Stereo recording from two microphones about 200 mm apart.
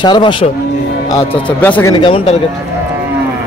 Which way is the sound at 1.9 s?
25° left (ahead or behind).